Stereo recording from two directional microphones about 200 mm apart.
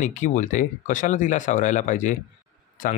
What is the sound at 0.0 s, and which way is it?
Speech, 40° left (ahead or behind).